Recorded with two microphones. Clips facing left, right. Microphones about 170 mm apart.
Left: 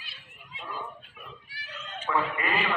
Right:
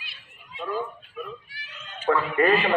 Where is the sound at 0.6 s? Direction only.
55° right (ahead or behind).